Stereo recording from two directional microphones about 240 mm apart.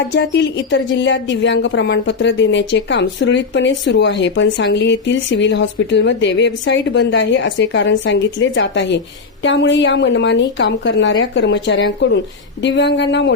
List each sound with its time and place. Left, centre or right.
0.0 s a woman's voice: left